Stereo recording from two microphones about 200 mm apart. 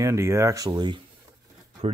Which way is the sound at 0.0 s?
15° right (ahead or behind).